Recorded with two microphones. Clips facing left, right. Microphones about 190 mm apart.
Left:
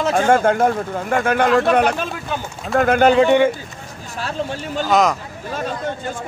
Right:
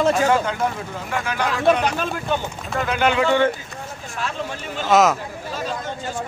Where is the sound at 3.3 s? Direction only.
15° left (ahead or behind).